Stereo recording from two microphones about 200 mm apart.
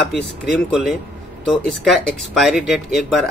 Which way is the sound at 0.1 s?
Centre (ahead or behind).